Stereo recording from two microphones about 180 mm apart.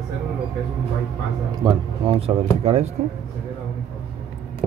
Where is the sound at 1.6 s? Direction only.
30° right (ahead or behind).